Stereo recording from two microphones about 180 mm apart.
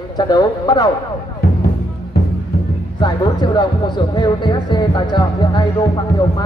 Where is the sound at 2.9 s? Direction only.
25° left (ahead or behind).